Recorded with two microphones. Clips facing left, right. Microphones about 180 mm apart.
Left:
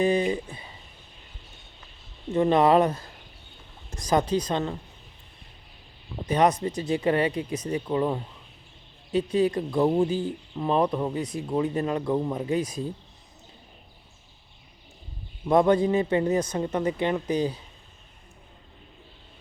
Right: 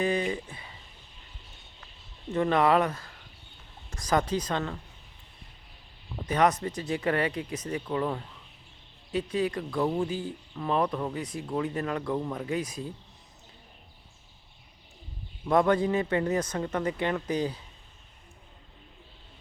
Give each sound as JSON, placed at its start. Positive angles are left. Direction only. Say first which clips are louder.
{"t": 0.2, "sound": "a sound", "louder": "left 5 dB", "side_deg": 20}
{"t": 2.3, "sound": "speech", "louder": "left 4 dB", "side_deg": 20}
{"t": 6.2, "sound": "speech", "louder": "left 3 dB", "side_deg": 20}
{"t": 6.8, "sound": "speech", "louder": "left 4 dB", "side_deg": 25}
{"t": 9.3, "sound": "speech", "louder": "left 6 dB", "side_deg": 20}
{"t": 15.4, "sound": "speech", "louder": "left 3 dB", "side_deg": 20}